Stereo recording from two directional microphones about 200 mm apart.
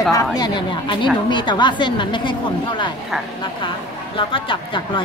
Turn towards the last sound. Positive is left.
turn(degrees=25)  # may be behind; listen again after turning